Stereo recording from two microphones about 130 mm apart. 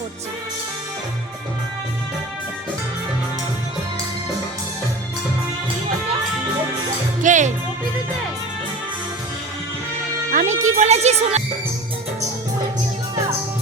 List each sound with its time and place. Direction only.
7.2 s music: 75° right (ahead or behind)
10.3 s music: 65° right (ahead or behind)